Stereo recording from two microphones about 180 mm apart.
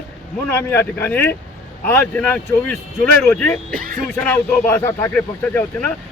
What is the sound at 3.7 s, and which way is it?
Speech, 50° right (ahead or behind).